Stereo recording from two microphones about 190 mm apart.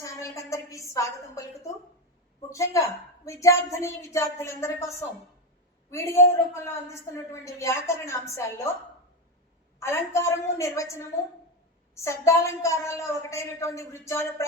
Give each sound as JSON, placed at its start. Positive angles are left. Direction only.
{"t": 0.0, "sound": "a sound", "side_deg": 15}
{"t": 2.5, "sound": "a woman's voice", "side_deg": 15}
{"t": 9.8, "sound": "a woman's voice", "side_deg": 15}
{"t": 12.0, "sound": "a woman's voice", "side_deg": 15}